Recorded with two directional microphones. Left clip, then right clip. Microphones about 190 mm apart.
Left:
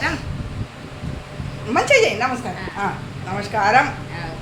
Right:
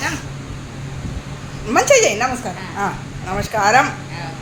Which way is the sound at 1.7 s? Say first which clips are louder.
Right 2 dB; 35° right (ahead or behind).